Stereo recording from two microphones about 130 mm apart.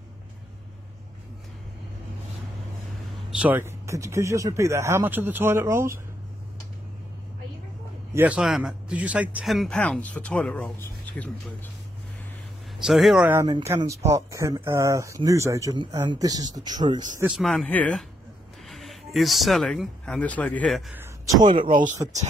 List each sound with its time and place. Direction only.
3.3 s speech: 10° right (ahead or behind)
8.1 s a man's voice: 15° right (ahead or behind)
8.4 s speech: 5° right (ahead or behind)
9.5 s speech: centre (ahead or behind)
9.8 s speech: 10° left (ahead or behind)
12.7 s speech: centre (ahead or behind)
13.3 s speech: 20° right (ahead or behind)
17.3 s speech: centre (ahead or behind)
20.9 s a sound: 20° right (ahead or behind)
21.4 s speech: 35° right (ahead or behind)